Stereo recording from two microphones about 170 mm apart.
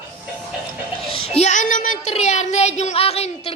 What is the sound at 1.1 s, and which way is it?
Speech, 35° left (ahead or behind).